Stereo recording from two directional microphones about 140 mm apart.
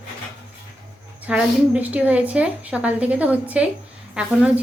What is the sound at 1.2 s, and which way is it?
A woman's voice, 10° right (ahead or behind).